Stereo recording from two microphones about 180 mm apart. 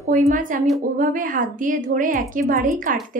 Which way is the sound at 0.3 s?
45° right (ahead or behind).